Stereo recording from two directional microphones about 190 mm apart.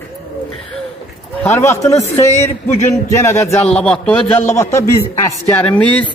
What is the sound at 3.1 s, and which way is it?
Speech, 15° left (ahead or behind).